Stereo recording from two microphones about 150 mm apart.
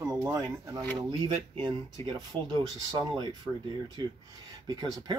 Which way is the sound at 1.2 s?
35° right (ahead or behind).